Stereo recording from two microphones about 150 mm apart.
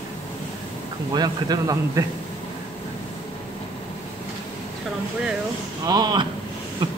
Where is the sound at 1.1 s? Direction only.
25° right (ahead or behind).